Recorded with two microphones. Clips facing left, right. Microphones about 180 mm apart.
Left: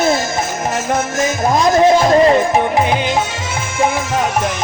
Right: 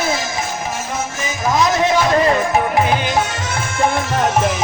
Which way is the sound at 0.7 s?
80° left.